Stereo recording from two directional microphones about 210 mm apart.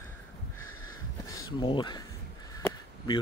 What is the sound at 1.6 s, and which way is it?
Speech, 20° left (ahead or behind).